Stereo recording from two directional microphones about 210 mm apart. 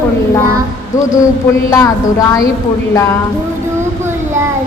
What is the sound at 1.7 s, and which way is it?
Speech, 15° left (ahead or behind).